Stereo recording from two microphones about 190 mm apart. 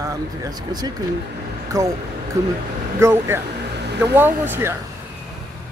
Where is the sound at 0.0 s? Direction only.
20° right (ahead or behind).